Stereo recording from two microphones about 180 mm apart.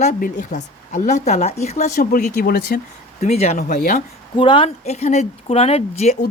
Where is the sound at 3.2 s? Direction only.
35° left (ahead or behind).